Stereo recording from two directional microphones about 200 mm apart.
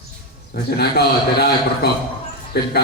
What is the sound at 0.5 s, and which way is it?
A man's voice, 55° left (ahead or behind).